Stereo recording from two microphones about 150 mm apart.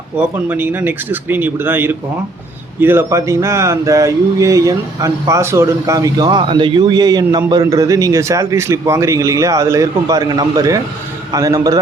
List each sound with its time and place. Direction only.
0.2 s a man's voice: 10° right (ahead or behind)